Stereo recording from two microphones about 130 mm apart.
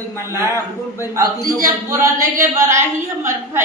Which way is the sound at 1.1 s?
25° right (ahead or behind).